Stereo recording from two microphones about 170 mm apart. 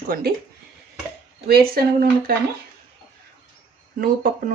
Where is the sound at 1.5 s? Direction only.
65° right (ahead or behind).